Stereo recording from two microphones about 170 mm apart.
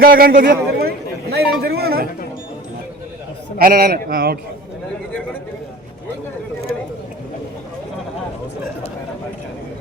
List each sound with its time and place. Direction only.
0.0 s a man's voice: 60° right (ahead or behind)
3.6 s a man's voice: 60° right (ahead or behind)